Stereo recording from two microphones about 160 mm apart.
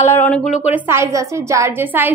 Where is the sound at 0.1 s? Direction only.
10° left (ahead or behind).